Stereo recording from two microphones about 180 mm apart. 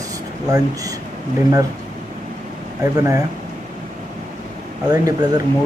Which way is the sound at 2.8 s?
20° right (ahead or behind).